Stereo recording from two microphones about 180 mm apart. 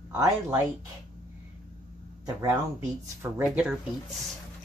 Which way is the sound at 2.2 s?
15° right (ahead or behind).